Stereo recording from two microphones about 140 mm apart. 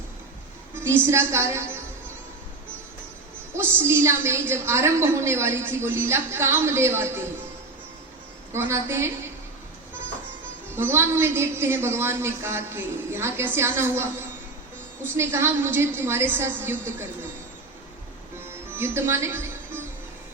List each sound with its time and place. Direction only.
0.8 s a woman's voice: 15° right (ahead or behind)
3.5 s a woman's voice: 15° right (ahead or behind)
8.5 s a woman's voice: 15° right (ahead or behind)
10.8 s a woman's voice: 15° right (ahead or behind)
18.7 s music: 15° right (ahead or behind)